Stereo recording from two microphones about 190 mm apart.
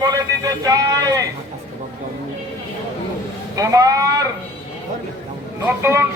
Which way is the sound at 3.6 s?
20° right (ahead or behind).